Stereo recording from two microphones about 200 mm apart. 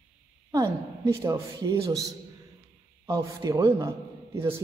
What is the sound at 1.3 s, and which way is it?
A man's voice, 20° right (ahead or behind).